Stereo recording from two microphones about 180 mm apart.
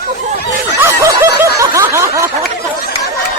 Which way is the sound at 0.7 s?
15° right (ahead or behind).